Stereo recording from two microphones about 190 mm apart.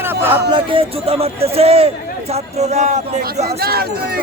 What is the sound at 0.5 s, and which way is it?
Speech, 30° right (ahead or behind).